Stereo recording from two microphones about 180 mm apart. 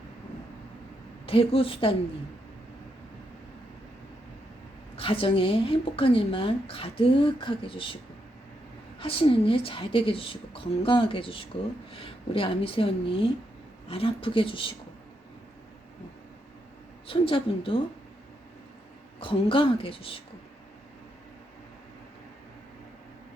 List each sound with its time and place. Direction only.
1.3 s speech: 30° left (ahead or behind)
4.9 s a woman's voice: 30° left (ahead or behind)
9.0 s a woman's voice: 30° left (ahead or behind)
17.1 s a woman's voice: 30° left (ahead or behind)
19.2 s speech: 30° left (ahead or behind)